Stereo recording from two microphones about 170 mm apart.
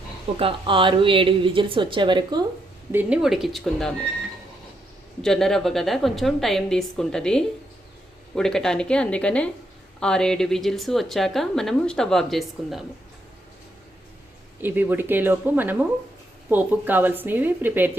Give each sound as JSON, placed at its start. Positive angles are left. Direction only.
{"t": 0.3, "sound": "a woman's voice", "side_deg": -30}
{"t": 2.9, "sound": "a woman's voice", "side_deg": -10}
{"t": 5.2, "sound": "a woman's voice", "side_deg": 0}
{"t": 14.6, "sound": "a woman's voice", "side_deg": -10}